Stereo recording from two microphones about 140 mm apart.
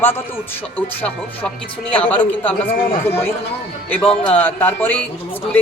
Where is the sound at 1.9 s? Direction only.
10° left (ahead or behind).